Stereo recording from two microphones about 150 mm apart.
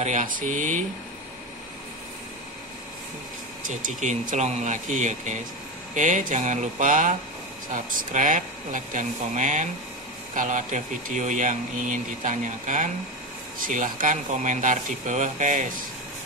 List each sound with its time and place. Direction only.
0.0 s speech: 55° right (ahead or behind)
3.6 s speech: 60° right (ahead or behind)